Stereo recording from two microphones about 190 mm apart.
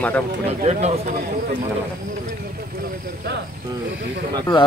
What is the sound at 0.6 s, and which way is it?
Speech, 35° right (ahead or behind).